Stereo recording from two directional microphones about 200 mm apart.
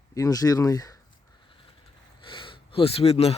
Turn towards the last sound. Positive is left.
turn(degrees=30)  # may be behind; listen again after turning